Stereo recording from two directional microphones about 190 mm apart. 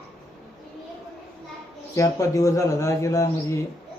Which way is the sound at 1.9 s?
15° left (ahead or behind).